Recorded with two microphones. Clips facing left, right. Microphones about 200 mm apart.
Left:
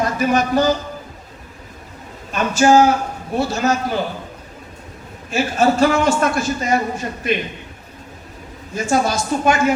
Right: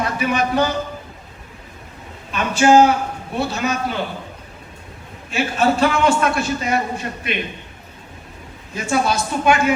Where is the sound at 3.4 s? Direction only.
60° right (ahead or behind).